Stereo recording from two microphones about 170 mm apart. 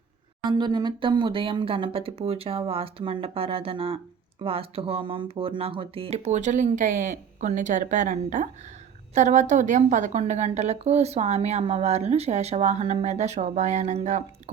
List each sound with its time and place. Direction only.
0.4 s a woman's voice: 25° right (ahead or behind); by 14.5 s 45° right (ahead or behind)